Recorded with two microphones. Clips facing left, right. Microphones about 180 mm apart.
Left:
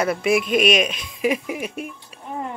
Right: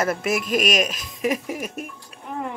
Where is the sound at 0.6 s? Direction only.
45° right (ahead or behind).